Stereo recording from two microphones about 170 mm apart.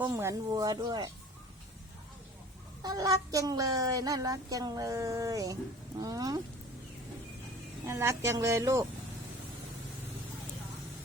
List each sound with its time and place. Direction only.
0.1 s speech: 15° right (ahead or behind)
2.8 s speech: 20° right (ahead or behind)
7.9 s a woman's voice: 15° right (ahead or behind)